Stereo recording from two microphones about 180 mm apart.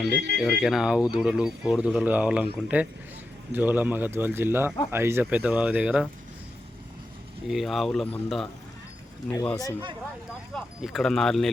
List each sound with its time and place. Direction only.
0.3 s speech: 5° right (ahead or behind)
7.4 s a man's voice: centre (ahead or behind)
10.5 s speech: centre (ahead or behind)